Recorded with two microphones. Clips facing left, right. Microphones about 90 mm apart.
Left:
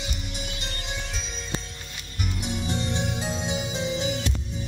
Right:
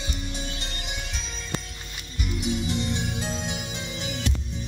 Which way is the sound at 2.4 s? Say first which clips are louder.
Right 3 dB; 35° left (ahead or behind).